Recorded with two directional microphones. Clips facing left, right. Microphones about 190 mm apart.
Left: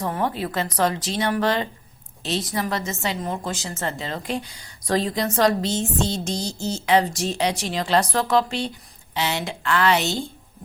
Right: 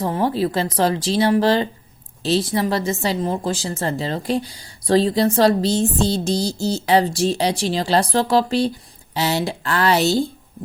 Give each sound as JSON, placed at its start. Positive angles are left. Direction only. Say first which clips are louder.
{"t": 0.0, "sound": "speech", "louder": "right 5 dB", "side_deg": -30}